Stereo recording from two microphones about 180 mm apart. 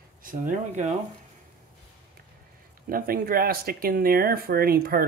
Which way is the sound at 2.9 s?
55° right (ahead or behind).